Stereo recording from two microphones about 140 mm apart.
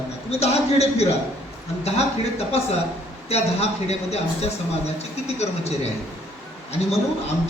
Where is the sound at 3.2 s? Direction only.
50° left (ahead or behind).